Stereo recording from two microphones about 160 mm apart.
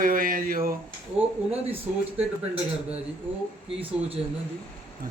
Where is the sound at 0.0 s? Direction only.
60° right (ahead or behind).